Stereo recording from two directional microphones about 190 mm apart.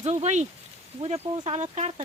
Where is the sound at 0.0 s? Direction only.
35° right (ahead or behind).